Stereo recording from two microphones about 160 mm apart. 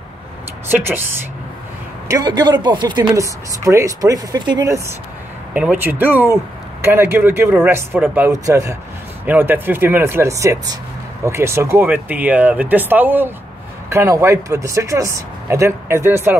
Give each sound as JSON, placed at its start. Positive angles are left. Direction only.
{"t": 0.7, "sound": "speech", "side_deg": -15}
{"t": 5.5, "sound": "speech", "side_deg": -10}